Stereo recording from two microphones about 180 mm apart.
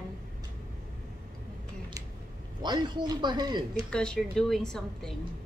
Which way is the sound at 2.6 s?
25° right (ahead or behind).